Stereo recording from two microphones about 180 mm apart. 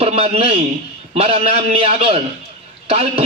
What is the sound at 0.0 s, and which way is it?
A man's voice, 35° right (ahead or behind).